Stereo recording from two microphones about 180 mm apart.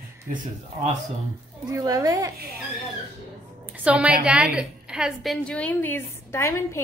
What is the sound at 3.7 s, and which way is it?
A woman's voice, 5° right (ahead or behind).